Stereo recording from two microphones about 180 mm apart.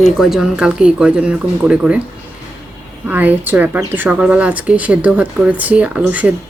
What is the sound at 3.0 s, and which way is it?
Speech, 10° right (ahead or behind).